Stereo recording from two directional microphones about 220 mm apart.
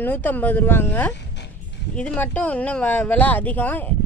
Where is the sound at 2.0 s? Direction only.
5° left (ahead or behind).